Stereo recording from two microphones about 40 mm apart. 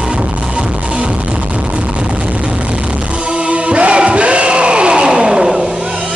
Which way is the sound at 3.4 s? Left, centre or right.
Right.